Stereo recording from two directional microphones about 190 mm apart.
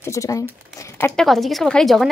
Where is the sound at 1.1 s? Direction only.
Centre (ahead or behind).